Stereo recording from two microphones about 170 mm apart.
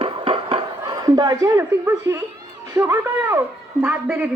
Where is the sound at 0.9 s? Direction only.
25° right (ahead or behind).